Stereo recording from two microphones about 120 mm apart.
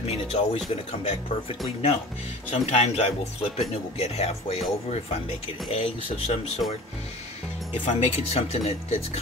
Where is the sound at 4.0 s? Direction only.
60° left (ahead or behind).